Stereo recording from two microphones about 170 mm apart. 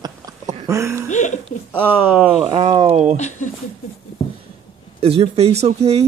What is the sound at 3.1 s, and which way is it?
Speech, 45° left (ahead or behind).